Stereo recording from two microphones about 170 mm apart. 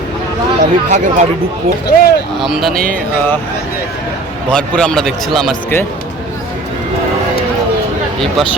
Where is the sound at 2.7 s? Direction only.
55° right (ahead or behind).